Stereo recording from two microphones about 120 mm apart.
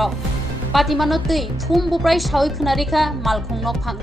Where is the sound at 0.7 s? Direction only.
Centre (ahead or behind).